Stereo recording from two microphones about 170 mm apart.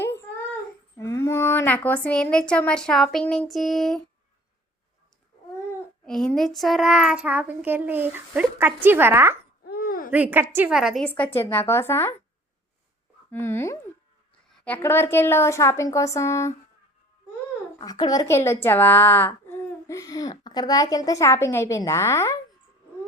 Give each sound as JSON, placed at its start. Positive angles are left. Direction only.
{"t": 0.9, "sound": "speech", "side_deg": 15}
{"t": 6.1, "sound": "child singing", "side_deg": 0}
{"t": 9.6, "sound": "babbling", "side_deg": 60}
{"t": 10.1, "sound": "child singing", "side_deg": -10}
{"t": 11.3, "sound": "a woman's voice", "side_deg": 15}
{"t": 13.3, "sound": "a woman's voice", "side_deg": 15}
{"t": 17.7, "sound": "a woman's voice", "side_deg": 25}